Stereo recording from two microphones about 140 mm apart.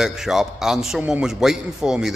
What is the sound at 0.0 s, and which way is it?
A man's voice, 5° right (ahead or behind).